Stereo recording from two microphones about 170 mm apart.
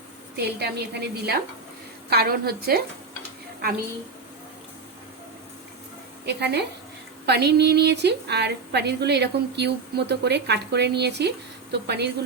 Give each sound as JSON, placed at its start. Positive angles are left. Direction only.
{"t": 0.4, "sound": "a woman's voice", "side_deg": -70}
{"t": 6.2, "sound": "a woman's voice", "side_deg": -80}